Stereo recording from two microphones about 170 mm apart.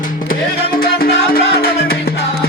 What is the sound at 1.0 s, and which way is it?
Music, 65° left (ahead or behind).